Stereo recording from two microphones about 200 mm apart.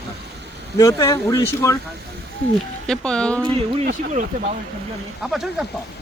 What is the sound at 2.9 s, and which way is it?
Speech, 5° left (ahead or behind).